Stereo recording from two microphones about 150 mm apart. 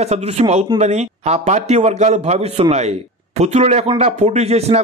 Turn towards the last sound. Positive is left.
turn(degrees=-45)  # may be behind; listen again after turning